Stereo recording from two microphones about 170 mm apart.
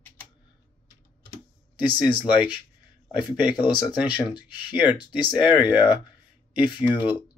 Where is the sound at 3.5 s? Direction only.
25° left (ahead or behind).